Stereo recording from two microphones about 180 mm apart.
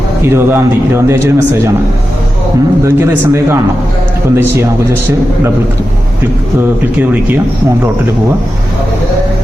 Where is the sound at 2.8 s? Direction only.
15° right (ahead or behind).